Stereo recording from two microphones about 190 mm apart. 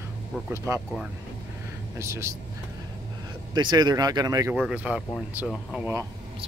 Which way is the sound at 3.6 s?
20° right (ahead or behind).